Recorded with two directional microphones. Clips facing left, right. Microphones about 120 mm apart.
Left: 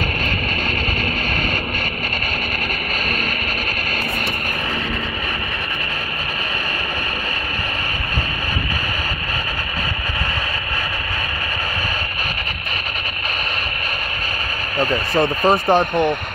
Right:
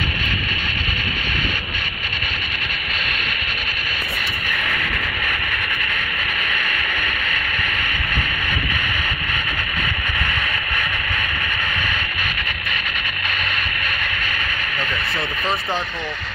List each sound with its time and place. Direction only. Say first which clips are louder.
14.8 s speech: left 11 dB; 45° left (ahead or behind)